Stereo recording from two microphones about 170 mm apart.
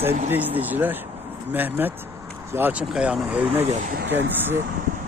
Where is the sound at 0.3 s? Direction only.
10° right (ahead or behind).